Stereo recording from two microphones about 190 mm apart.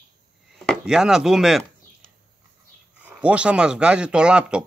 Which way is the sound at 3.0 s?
5° right (ahead or behind).